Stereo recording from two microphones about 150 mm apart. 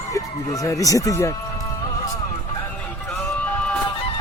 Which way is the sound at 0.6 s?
20° left (ahead or behind).